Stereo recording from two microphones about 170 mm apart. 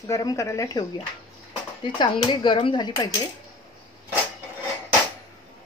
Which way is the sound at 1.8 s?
30° left (ahead or behind).